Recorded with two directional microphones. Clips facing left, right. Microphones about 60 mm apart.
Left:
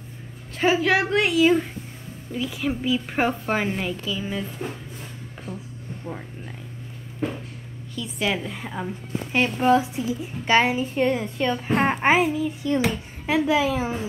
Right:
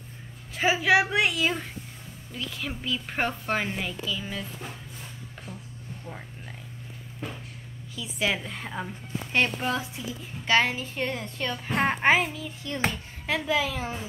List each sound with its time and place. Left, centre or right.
0.6 s a woman's voice: centre
6.0 s a woman's voice: left
7.9 s a woman's voice: centre
9.6 s a woman's voice: centre
13.3 s a woman's voice: centre